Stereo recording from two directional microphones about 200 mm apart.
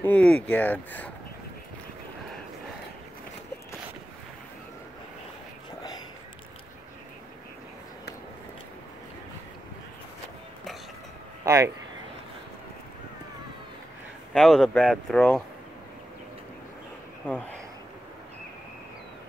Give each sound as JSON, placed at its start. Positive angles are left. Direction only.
{"t": 0.0, "sound": "speech", "side_deg": 5}
{"t": 11.4, "sound": "speech", "side_deg": -15}
{"t": 14.3, "sound": "speech", "side_deg": 0}